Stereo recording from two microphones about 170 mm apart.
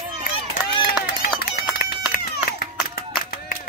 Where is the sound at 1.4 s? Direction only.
60° left (ahead or behind).